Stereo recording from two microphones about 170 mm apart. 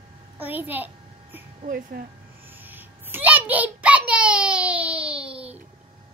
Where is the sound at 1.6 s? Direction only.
60° right (ahead or behind).